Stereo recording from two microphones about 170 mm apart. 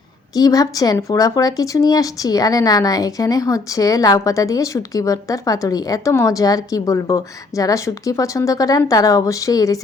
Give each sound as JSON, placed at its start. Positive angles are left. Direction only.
{"t": 0.3, "sound": "speech", "side_deg": 20}